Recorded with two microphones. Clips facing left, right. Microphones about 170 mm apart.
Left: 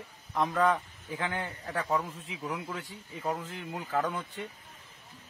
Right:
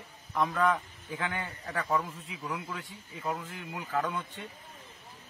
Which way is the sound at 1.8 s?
10° left (ahead or behind).